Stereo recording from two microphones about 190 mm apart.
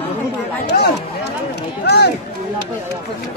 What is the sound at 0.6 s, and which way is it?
Speech, 60° left (ahead or behind).